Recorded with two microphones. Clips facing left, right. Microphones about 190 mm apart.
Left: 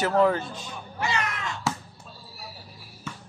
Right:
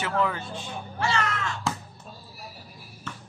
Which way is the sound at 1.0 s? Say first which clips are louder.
Right 2 dB; 20° left (ahead or behind).